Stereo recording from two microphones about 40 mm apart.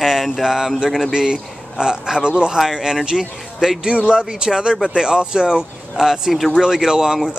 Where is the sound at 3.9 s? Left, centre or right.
Right.